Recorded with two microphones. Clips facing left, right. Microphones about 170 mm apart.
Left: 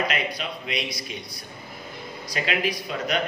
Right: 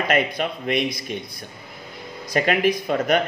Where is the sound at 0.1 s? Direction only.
50° right (ahead or behind).